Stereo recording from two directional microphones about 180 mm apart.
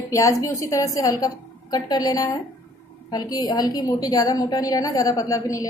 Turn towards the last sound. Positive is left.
turn(degrees=20)  # may be behind; listen again after turning